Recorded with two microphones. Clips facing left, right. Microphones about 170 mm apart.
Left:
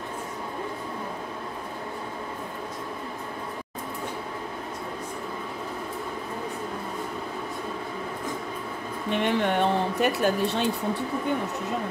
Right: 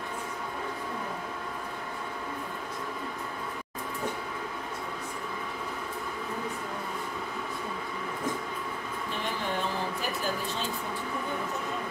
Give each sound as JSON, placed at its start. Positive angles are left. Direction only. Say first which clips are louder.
{"t": 9.1, "sound": "speech", "louder": "left 10 dB", "side_deg": 70}